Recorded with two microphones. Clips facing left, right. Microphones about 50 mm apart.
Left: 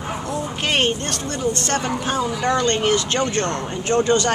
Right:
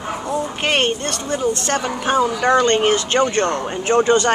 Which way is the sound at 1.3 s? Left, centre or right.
Centre.